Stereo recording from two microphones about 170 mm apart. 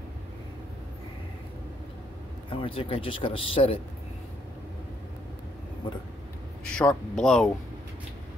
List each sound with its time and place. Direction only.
2.5 s speech: 30° left (ahead or behind)
6.6 s speech: 5° left (ahead or behind)